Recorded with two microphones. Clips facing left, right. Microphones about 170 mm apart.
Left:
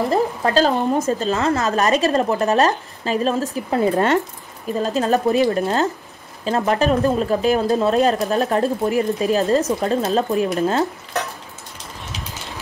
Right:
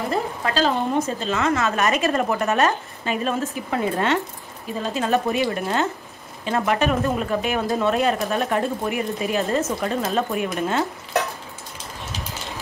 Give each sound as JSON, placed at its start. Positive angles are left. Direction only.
{"t": 0.6, "sound": "speech", "side_deg": 40}